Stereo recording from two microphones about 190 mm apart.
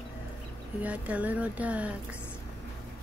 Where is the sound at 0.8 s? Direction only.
5° right (ahead or behind).